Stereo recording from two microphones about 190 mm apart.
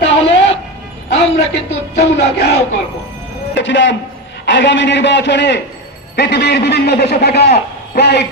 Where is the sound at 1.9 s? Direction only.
65° left (ahead or behind).